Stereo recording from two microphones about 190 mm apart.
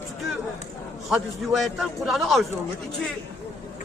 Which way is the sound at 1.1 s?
Centre (ahead or behind).